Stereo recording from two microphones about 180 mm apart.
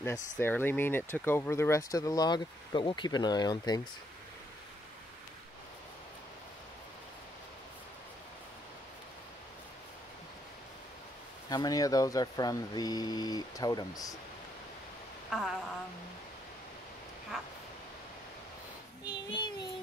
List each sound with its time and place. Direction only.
0.0 s speech: 15° left (ahead or behind)
11.4 s speech: 20° left (ahead or behind)
15.3 s a sound: 5° right (ahead or behind)
19.0 s child singing: 25° left (ahead or behind)